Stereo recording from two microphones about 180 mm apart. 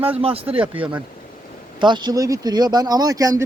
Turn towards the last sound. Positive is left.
turn(degrees=-20)  # may be behind; listen again after turning